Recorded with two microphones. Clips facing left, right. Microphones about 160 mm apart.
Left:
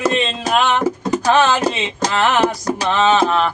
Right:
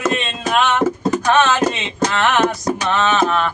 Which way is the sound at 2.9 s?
30° left (ahead or behind).